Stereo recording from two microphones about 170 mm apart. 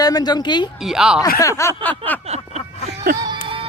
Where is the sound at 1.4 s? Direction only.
20° left (ahead or behind).